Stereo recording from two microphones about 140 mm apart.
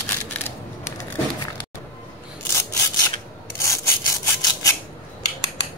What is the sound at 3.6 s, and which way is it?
Rub, 20° left (ahead or behind).